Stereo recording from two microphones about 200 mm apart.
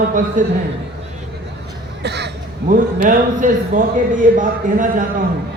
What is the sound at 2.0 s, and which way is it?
Crow, 55° right (ahead or behind).